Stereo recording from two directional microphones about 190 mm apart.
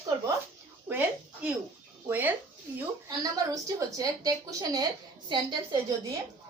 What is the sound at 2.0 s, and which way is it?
A woman's voice, 10° right (ahead or behind).